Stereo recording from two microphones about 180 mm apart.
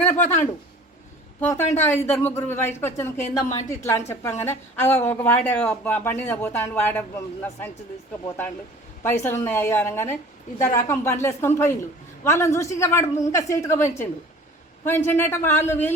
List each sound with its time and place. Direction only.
0.1 s a woman's voice: 40° left (ahead or behind)
1.4 s a woman's voice: 10° left (ahead or behind)
3.2 s a woman's voice: 40° left (ahead or behind)
3.7 s speech: 15° left (ahead or behind)
9.0 s speech: 15° left (ahead or behind)